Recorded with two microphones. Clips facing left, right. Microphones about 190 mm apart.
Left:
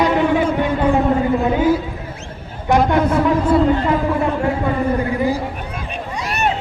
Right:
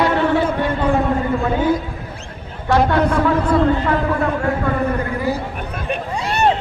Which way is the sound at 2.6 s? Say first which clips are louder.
Left 1 dB; 15° left (ahead or behind).